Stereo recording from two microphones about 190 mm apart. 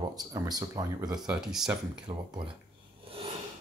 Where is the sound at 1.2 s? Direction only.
Centre (ahead or behind).